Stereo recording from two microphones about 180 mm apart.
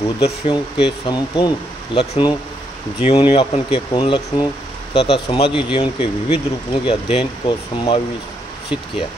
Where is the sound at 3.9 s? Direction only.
25° left (ahead or behind).